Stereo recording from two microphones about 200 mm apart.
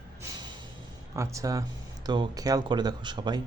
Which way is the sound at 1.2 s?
15° right (ahead or behind).